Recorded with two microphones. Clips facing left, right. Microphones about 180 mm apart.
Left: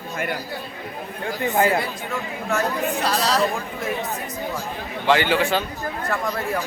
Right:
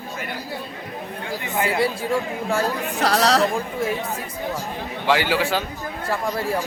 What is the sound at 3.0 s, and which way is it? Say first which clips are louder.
Speech: right 5 dB; 75° right (ahead or behind).